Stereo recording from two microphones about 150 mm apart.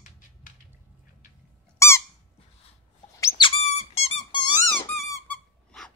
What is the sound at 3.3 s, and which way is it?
Squeak, 40° left (ahead or behind).